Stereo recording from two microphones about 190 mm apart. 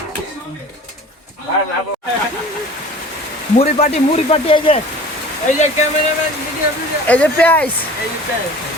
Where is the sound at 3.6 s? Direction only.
35° left (ahead or behind).